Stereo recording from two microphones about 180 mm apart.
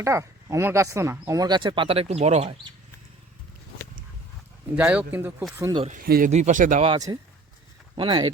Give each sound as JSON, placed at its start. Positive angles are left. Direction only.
{"t": 0.0, "sound": "speech", "side_deg": -15}
{"t": 4.7, "sound": "speech", "side_deg": -5}
{"t": 5.5, "sound": "speech", "side_deg": -15}
{"t": 6.0, "sound": "speech", "side_deg": -55}
{"t": 6.3, "sound": "speech", "side_deg": -40}
{"t": 7.1, "sound": "speech", "side_deg": -20}